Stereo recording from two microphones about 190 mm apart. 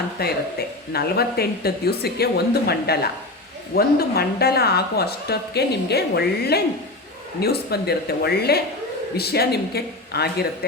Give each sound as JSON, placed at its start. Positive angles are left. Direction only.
{"t": 0.2, "sound": "a woman's voice", "side_deg": 55}